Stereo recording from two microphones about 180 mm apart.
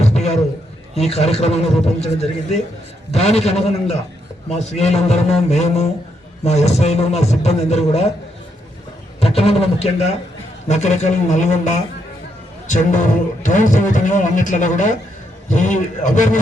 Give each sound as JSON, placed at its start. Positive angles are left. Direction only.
{"t": 0.0, "sound": "a sound", "side_deg": 35}
{"t": 0.9, "sound": "a man's voice", "side_deg": 35}
{"t": 9.2, "sound": "a man's voice", "side_deg": 35}